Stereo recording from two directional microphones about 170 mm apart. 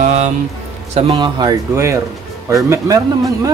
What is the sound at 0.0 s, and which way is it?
Music, 40° right (ahead or behind).